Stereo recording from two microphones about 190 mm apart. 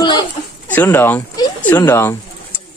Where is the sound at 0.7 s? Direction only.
10° left (ahead or behind).